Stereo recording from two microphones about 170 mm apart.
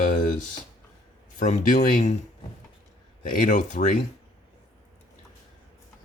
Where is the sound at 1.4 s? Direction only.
45° left (ahead or behind).